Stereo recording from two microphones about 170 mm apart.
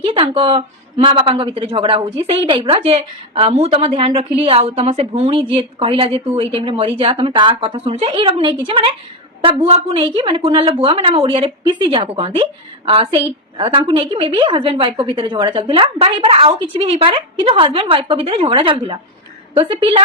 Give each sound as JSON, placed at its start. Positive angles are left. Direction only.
{"t": 0.0, "sound": "a woman's voice", "side_deg": -30}